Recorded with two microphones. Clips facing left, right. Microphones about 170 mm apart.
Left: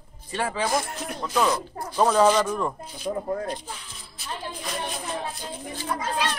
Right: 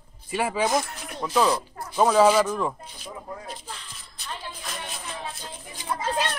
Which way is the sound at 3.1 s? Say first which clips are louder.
Left 11 dB; 50° left (ahead or behind).